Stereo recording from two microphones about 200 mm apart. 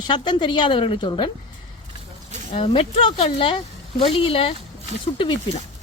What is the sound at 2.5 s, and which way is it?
A woman's voice, 25° left (ahead or behind).